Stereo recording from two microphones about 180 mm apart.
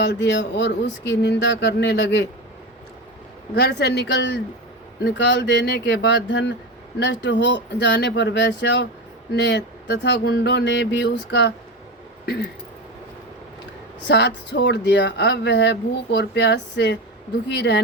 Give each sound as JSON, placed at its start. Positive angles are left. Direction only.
{"t": 0.0, "sound": "speech", "side_deg": 75}
{"t": 3.5, "sound": "speech", "side_deg": 65}
{"t": 12.2, "sound": "a sound", "side_deg": 65}
{"t": 14.1, "sound": "speech", "side_deg": 75}